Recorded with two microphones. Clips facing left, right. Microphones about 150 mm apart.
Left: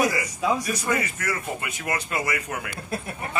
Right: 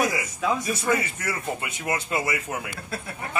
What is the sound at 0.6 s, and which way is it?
Speech, 25° right (ahead or behind).